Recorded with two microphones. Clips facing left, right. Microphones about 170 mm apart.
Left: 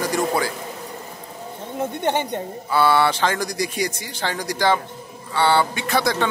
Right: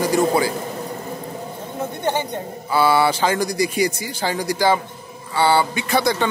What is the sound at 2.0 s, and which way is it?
Speech, 20° left (ahead or behind).